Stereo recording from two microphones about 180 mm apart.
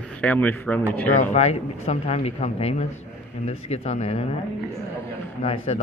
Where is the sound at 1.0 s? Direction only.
45° left (ahead or behind).